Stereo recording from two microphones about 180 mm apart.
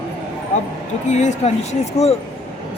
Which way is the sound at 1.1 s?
40° left (ahead or behind).